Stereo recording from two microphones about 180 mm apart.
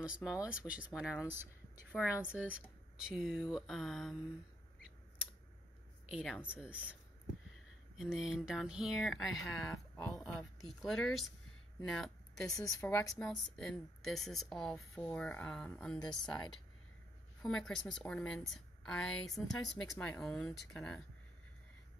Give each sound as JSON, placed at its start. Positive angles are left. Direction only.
{"t": 0.0, "sound": "a woman's voice", "side_deg": -5}
{"t": 6.0, "sound": "a woman's voice", "side_deg": -5}
{"t": 8.0, "sound": "a woman's voice", "side_deg": -5}
{"t": 12.4, "sound": "speech", "side_deg": 20}
{"t": 13.0, "sound": "a woman's voice", "side_deg": 5}